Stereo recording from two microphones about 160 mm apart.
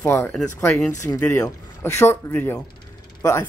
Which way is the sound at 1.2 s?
15° left (ahead or behind).